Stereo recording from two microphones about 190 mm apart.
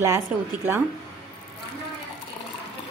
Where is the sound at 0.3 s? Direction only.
5° right (ahead or behind).